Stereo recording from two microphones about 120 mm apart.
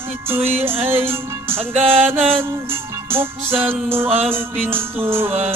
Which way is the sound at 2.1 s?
55° right (ahead or behind).